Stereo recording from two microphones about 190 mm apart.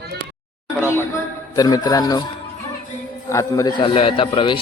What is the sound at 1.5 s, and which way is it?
Speech, 20° left (ahead or behind).